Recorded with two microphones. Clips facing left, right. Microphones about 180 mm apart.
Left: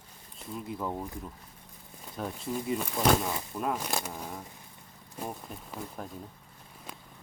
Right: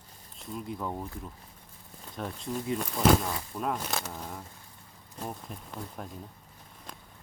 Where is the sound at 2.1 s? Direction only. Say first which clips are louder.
Left 1 dB; 5° left (ahead or behind).